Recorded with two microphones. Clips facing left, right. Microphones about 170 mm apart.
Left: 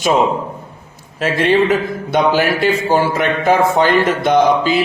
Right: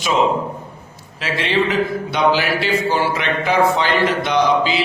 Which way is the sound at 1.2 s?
45° left (ahead or behind).